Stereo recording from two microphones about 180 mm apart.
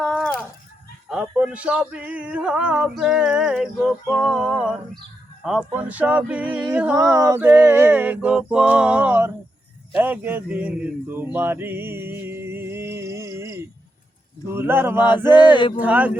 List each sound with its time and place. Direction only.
0.0 s chicken: 5° left (ahead or behind)
1.1 s male singing: 5° right (ahead or behind)
6.9 s male singing: 20° right (ahead or behind)
10.0 s speech: 10° right (ahead or behind)
14.4 s male singing: 15° right (ahead or behind)
15.3 s male singing: 25° left (ahead or behind)
15.8 s male singing: 10° right (ahead or behind)